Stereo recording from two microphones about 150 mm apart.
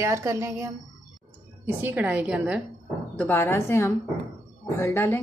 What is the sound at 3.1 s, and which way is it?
A woman's voice, 15° left (ahead or behind).